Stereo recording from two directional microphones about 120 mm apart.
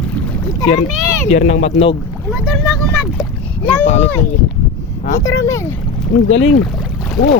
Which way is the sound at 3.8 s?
60° left (ahead or behind).